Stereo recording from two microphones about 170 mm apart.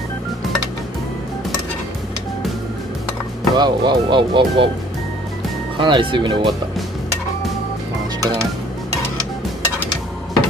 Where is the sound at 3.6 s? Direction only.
25° right (ahead or behind).